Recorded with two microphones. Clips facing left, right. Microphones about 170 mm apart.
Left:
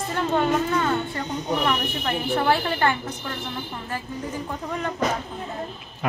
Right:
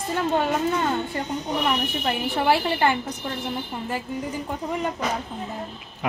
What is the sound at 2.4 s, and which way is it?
Speech, 15° right (ahead or behind).